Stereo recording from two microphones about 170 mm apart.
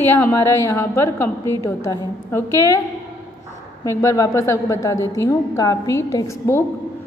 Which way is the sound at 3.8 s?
20° left (ahead or behind).